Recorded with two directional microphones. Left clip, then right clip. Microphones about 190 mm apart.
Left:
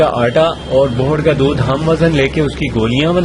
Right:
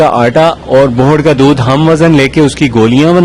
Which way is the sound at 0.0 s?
40° right (ahead or behind).